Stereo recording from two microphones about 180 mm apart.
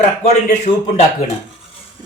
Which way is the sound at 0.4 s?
40° left (ahead or behind).